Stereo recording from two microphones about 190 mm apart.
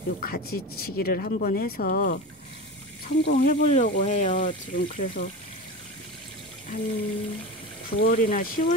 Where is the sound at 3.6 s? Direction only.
40° left (ahead or behind).